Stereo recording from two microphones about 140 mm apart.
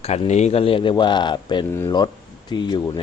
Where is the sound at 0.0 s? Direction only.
50° left (ahead or behind).